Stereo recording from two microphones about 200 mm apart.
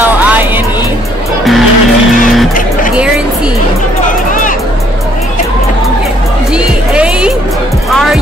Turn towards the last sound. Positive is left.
turn(degrees=-5)  # may be behind; listen again after turning